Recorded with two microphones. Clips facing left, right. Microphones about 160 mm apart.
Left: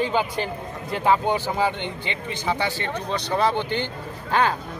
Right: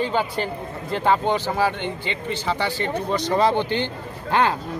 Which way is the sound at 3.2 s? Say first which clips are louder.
Right 3 dB; 15° right (ahead or behind).